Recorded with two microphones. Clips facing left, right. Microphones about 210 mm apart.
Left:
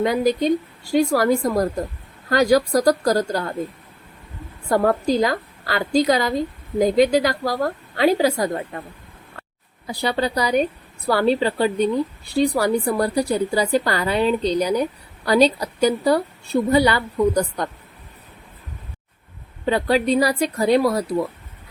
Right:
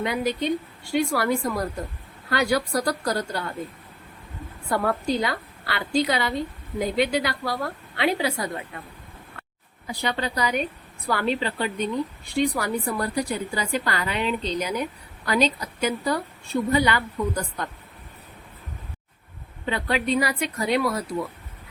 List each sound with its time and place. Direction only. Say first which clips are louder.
0.0 s a woman's voice: left 7 dB; 40° left (ahead or behind)
4.7 s a woman's voice: left 6 dB; 40° left (ahead or behind)
9.8 s a woman's voice: left 6 dB; 35° left (ahead or behind)
19.7 s a woman's voice: left 6 dB; 35° left (ahead or behind)